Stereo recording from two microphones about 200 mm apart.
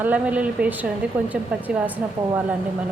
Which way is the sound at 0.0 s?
5° right (ahead or behind).